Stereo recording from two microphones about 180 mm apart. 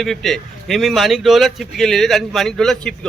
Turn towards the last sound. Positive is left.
turn(degrees=5)  # may be behind; listen again after turning